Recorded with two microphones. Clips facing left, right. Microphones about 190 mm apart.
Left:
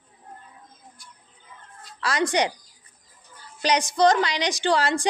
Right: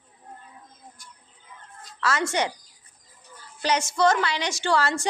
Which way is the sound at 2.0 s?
15° left (ahead or behind).